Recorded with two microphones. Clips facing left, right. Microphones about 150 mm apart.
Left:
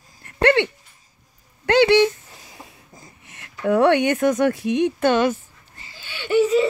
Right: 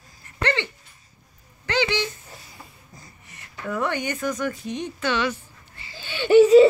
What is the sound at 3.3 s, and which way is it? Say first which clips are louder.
Speech: left 10 dB; 65° left (ahead or behind).